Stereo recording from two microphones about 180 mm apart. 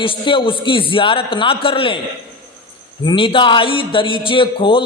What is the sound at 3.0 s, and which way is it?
A man's voice, 30° left (ahead or behind).